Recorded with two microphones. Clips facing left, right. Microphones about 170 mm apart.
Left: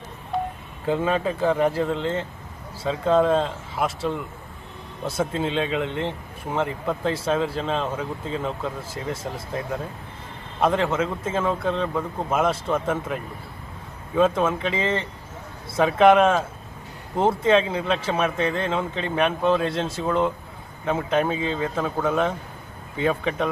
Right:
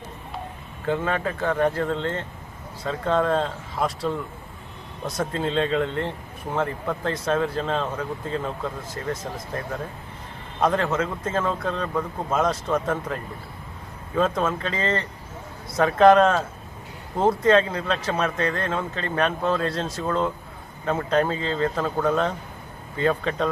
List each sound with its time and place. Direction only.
0.9 s speech: 15° left (ahead or behind)
5.0 s speech: 5° left (ahead or behind)
10.6 s speech: 10° left (ahead or behind)
14.4 s speech: 10° left (ahead or behind)
17.2 s speech: 25° left (ahead or behind)
17.5 s speech: 10° left (ahead or behind); by 20.1 s 25° left (ahead or behind)
20.1 s speech: 10° left (ahead or behind)